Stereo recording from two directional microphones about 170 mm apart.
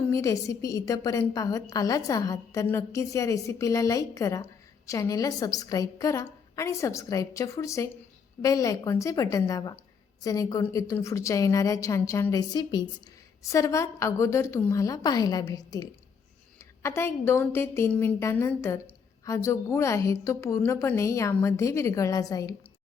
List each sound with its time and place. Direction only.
0.1 s a woman's voice: 20° left (ahead or behind)